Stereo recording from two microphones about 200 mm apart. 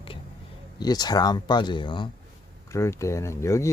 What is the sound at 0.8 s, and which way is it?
Speech, 20° left (ahead or behind).